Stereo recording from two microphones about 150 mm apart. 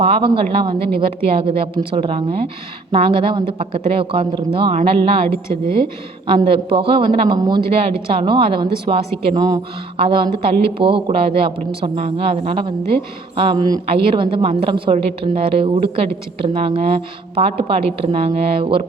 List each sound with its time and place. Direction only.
0.0 s speech: 40° right (ahead or behind)
6.2 s speech: 35° right (ahead or behind)